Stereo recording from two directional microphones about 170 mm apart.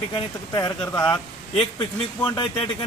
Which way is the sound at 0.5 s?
20° left (ahead or behind).